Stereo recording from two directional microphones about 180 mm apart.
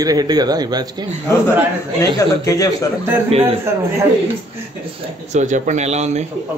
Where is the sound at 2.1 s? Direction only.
20° left (ahead or behind).